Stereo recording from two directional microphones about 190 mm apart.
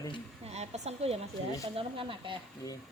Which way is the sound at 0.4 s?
35° right (ahead or behind).